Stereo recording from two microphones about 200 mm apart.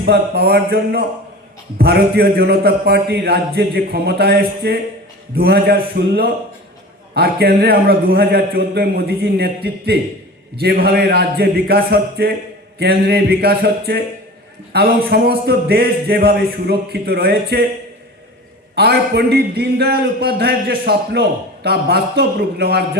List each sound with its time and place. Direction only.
0.0 s a man's voice: 50° right (ahead or behind)
18.7 s a man's voice: 55° right (ahead or behind)